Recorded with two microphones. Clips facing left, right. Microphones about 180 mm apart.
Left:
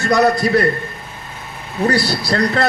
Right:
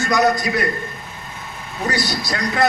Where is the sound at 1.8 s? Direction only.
60° left (ahead or behind).